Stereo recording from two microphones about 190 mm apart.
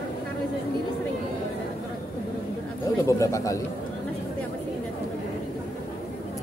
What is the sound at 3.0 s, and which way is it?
Speech, 15° left (ahead or behind).